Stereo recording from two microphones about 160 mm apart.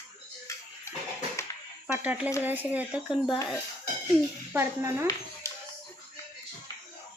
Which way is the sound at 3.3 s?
15° left (ahead or behind).